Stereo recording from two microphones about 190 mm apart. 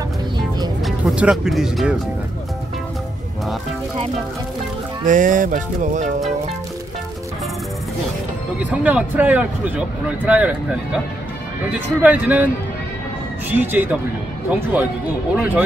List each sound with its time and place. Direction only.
0.8 s speech: 5° right (ahead or behind)
5.0 s music: 45° right (ahead or behind)
8.8 s a man's voice: 10° right (ahead or behind)
12.0 s a man's voice: 10° right (ahead or behind)
13.5 s a man's voice: 10° right (ahead or behind)